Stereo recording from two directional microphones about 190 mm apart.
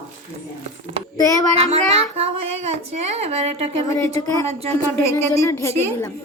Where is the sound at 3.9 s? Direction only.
15° left (ahead or behind).